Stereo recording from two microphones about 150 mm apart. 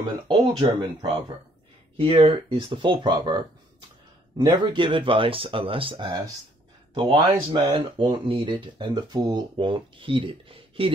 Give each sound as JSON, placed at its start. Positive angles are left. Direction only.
{"t": 0.3, "sound": "speech", "side_deg": -30}